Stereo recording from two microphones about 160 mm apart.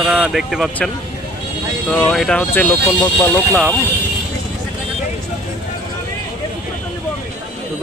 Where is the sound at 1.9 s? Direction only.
5° left (ahead or behind).